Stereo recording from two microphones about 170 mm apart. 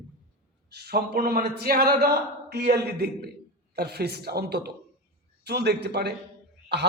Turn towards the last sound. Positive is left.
turn(degrees=-90)